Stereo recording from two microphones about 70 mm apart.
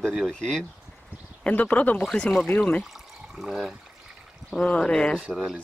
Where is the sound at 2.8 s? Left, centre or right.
Centre.